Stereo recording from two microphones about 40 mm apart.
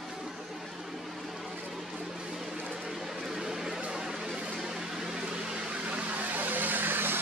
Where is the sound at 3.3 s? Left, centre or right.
Centre.